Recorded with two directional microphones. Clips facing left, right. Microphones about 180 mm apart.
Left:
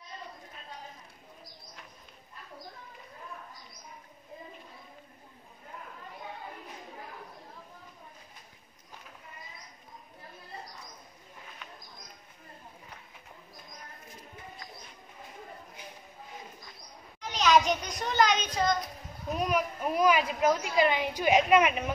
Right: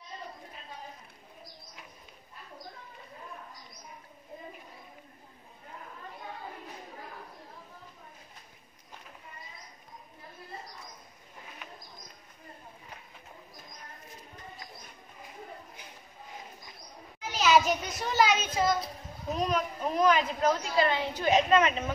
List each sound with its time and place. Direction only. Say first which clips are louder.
17.2 s a child's voice: even; 5° right (ahead or behind)
19.3 s a woman's voice: left 1 dB; 10° left (ahead or behind)